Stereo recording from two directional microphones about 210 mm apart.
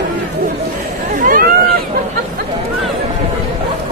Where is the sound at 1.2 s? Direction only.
40° right (ahead or behind).